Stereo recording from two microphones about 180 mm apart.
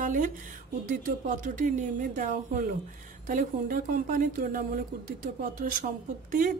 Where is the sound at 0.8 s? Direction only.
45° right (ahead or behind).